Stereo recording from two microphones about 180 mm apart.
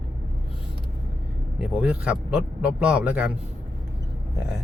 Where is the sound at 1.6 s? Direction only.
5° right (ahead or behind).